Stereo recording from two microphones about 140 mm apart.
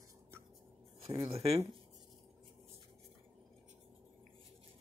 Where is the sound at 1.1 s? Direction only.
40° right (ahead or behind).